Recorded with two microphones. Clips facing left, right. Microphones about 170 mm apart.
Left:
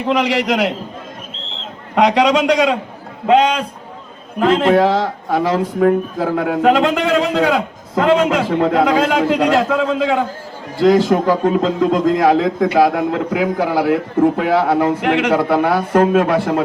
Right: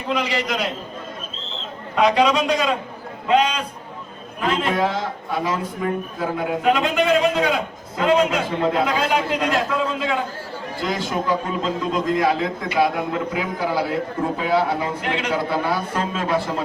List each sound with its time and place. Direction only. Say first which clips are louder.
0.1 s a man's voice: left 7 dB; 80° left
2.0 s a man's voice: left 4 dB; 75° left (ahead or behind)
10.8 s a man's voice: left 13 dB; 90° left; by 16.6 s 65° left (ahead or behind)